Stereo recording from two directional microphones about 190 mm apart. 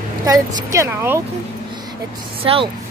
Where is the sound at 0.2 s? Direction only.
20° right (ahead or behind).